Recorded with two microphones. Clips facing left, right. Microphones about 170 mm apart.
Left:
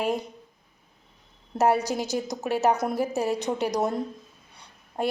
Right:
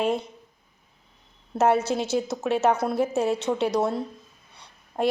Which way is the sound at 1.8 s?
40° left (ahead or behind).